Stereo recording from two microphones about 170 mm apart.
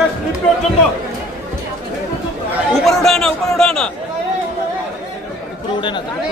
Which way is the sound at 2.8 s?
Centre (ahead or behind).